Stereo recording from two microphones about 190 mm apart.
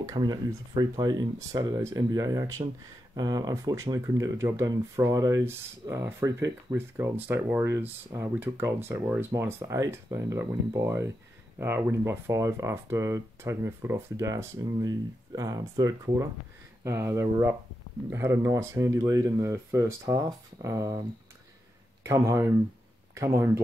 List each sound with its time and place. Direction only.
0.0 s speech: 20° right (ahead or behind)
22.0 s speech: 15° right (ahead or behind)